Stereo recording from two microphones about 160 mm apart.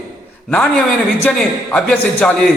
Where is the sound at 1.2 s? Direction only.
5° left (ahead or behind).